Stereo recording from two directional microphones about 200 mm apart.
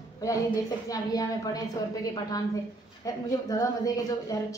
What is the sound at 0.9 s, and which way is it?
A woman's voice, 20° left (ahead or behind).